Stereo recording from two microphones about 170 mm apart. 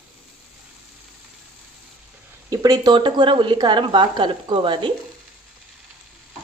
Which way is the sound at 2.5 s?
20° right (ahead or behind).